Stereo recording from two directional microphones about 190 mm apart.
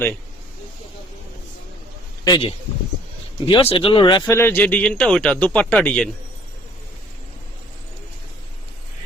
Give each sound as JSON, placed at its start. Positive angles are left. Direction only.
{"t": 2.2, "sound": "a man's voice", "side_deg": 20}
{"t": 3.4, "sound": "speech", "side_deg": 30}
{"t": 4.3, "sound": "speech", "side_deg": 10}